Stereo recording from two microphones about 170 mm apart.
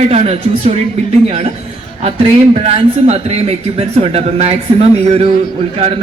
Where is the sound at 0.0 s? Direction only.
40° right (ahead or behind).